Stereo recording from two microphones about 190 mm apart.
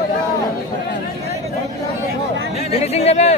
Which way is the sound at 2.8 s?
35° left (ahead or behind).